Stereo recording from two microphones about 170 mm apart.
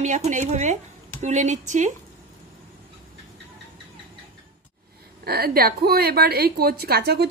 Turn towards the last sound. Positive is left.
turn(degrees=-70)  # may be behind; listen again after turning